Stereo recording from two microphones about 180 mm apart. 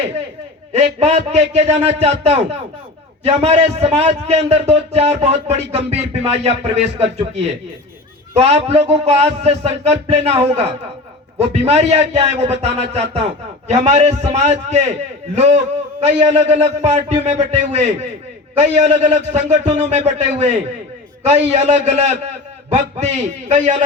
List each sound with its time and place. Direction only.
0.7 s a man's voice: 35° right (ahead or behind)